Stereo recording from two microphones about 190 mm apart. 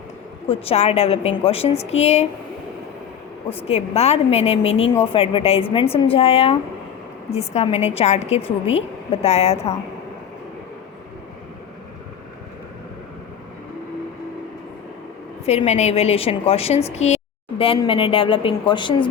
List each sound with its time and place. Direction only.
0.4 s a woman's voice: 30° left (ahead or behind)
3.7 s a woman's voice: 35° left (ahead or behind)
15.4 s a woman's voice: 35° left (ahead or behind)